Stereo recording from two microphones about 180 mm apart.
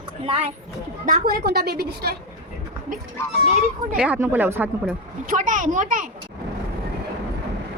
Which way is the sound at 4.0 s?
10° right (ahead or behind).